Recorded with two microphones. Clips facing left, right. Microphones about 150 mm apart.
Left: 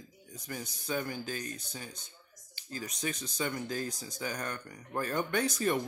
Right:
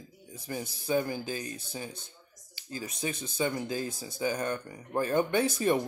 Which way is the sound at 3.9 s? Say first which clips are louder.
Right 3 dB; 5° right (ahead or behind).